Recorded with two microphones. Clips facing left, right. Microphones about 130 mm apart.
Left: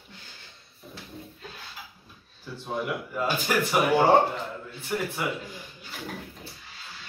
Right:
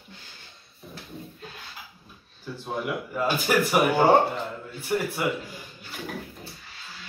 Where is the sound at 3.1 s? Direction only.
Centre (ahead or behind).